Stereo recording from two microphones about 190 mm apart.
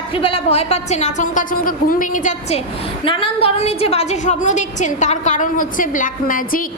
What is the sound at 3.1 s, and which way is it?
A woman's voice, 30° left (ahead or behind).